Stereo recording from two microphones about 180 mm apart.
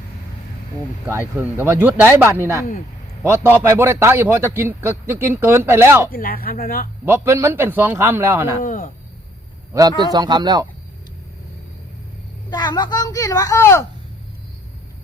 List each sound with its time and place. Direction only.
1.4 s a man's voice: 10° right (ahead or behind)
6.1 s speech: 55° left (ahead or behind)
7.0 s a man's voice: 15° right (ahead or behind)
8.6 s speech: 45° left (ahead or behind)
10.0 s a man's voice: 25° right (ahead or behind)
12.5 s a woman's voice: 25° left (ahead or behind)